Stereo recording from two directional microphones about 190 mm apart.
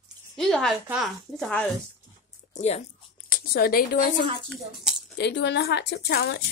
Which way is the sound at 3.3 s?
55° left (ahead or behind).